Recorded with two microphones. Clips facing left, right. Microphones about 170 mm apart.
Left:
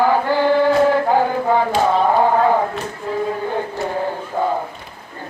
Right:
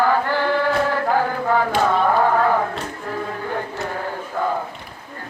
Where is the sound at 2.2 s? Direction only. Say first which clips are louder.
Left 3 dB; 20° left (ahead or behind).